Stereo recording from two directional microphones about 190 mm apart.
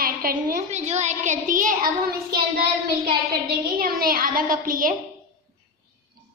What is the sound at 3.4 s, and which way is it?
A child's voice, 50° right (ahead or behind).